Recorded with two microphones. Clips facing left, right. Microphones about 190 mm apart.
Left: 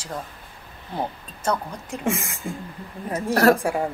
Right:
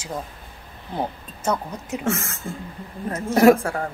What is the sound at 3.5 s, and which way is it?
Speech, 15° left (ahead or behind).